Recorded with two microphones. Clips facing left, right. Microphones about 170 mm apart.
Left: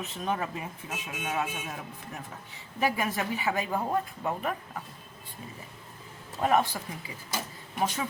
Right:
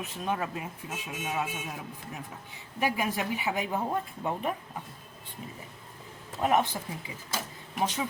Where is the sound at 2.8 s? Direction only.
15° right (ahead or behind).